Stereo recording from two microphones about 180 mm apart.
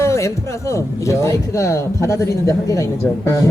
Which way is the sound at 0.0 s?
15° left (ahead or behind).